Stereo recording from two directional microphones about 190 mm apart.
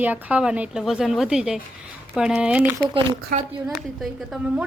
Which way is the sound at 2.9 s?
30° right (ahead or behind).